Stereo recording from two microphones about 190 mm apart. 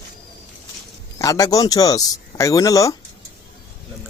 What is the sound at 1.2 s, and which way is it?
Speech, 20° left (ahead or behind).